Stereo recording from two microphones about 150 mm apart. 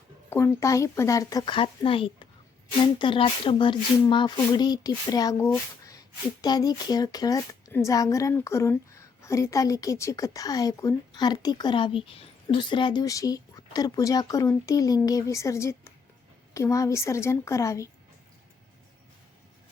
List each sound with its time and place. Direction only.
0.3 s a woman's voice: 20° left (ahead or behind)